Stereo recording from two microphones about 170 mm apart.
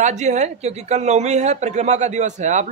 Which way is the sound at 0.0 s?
45° right (ahead or behind).